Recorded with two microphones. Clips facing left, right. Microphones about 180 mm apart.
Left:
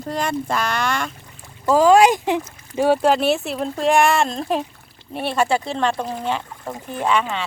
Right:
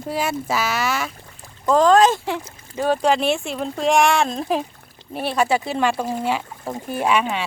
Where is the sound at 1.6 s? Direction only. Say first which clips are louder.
Left 1 dB; 10° left (ahead or behind).